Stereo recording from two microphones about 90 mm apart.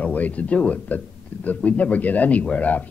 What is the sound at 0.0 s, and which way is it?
Speech, 15° left (ahead or behind).